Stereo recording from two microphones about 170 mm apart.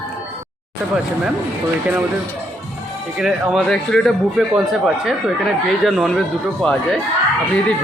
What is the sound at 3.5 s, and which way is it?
A man's voice, 5° left (ahead or behind).